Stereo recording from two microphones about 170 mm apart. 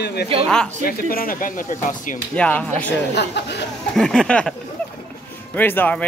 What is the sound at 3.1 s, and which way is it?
Speech, 85° left.